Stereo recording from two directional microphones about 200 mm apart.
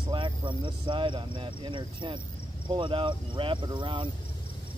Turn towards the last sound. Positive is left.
turn(degrees=-25)  # may be behind; listen again after turning